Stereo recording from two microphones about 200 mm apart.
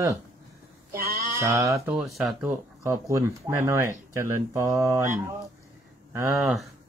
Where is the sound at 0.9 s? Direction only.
50° right (ahead or behind).